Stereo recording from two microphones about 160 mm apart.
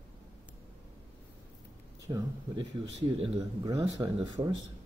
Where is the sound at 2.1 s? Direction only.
25° right (ahead or behind).